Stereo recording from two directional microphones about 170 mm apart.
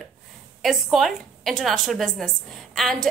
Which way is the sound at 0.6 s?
Centre (ahead or behind).